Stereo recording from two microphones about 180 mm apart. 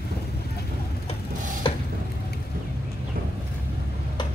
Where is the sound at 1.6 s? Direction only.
30° left (ahead or behind).